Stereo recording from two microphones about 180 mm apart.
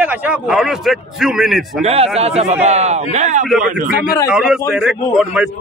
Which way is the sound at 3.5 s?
5° right (ahead or behind).